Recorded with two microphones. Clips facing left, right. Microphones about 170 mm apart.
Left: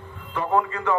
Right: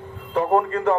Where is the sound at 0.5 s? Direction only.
50° right (ahead or behind).